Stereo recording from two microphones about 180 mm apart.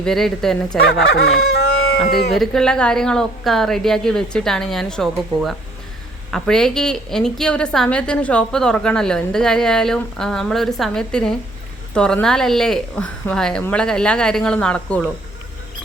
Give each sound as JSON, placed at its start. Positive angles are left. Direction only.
{"t": 0.0, "sound": "a woman's voice", "side_deg": 0}
{"t": 1.1, "sound": "chicken", "side_deg": 60}
{"t": 2.0, "sound": "speech", "side_deg": 60}
{"t": 2.3, "sound": "a woman's voice", "side_deg": 0}